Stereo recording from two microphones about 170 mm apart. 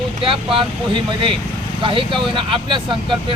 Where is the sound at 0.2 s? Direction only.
30° right (ahead or behind).